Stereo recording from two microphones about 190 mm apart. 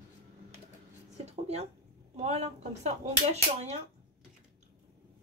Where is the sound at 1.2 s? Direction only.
35° right (ahead or behind).